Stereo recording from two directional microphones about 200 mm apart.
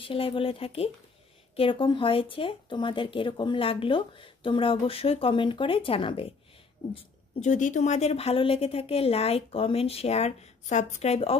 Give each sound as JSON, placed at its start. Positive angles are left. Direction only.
{"t": 0.0, "sound": "a woman's voice", "side_deg": 25}